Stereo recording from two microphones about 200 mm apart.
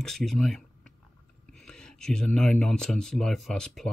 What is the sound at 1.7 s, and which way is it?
Speech, 5° left (ahead or behind).